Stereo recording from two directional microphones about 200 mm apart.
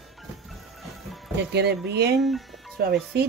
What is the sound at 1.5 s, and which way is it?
Speech, 55° right (ahead or behind).